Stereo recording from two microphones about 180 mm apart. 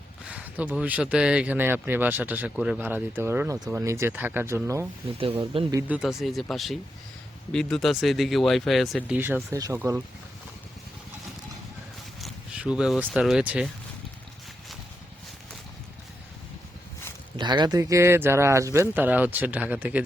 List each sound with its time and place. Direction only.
0.3 s speech: 10° right (ahead or behind)
5.4 s speech: 25° right (ahead or behind)
5.9 s speech: centre (ahead or behind)
9.1 s speech: 10° right (ahead or behind)
12.2 s speech: 5° right (ahead or behind)
17.3 s speech: 25° right (ahead or behind); by 20.0 s 10° right (ahead or behind)